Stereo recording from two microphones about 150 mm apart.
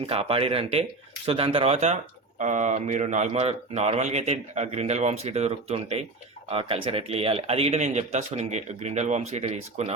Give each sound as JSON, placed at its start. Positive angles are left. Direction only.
{"t": 0.0, "sound": "speech", "side_deg": -40}